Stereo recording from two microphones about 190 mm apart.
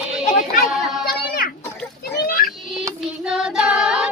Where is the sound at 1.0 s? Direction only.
55° left (ahead or behind).